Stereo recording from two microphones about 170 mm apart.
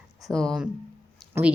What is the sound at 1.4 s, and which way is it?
Speech, 15° right (ahead or behind).